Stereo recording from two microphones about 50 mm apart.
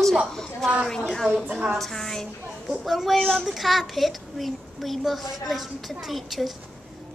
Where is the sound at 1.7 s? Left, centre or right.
Centre.